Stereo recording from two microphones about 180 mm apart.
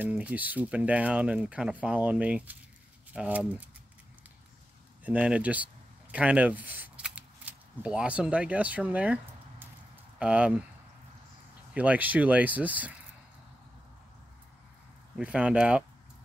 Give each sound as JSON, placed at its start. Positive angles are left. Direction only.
{"t": 0.0, "sound": "speech", "side_deg": -10}
{"t": 5.0, "sound": "speech", "side_deg": -5}
{"t": 11.7, "sound": "speech", "side_deg": -10}
{"t": 15.1, "sound": "speech", "side_deg": -5}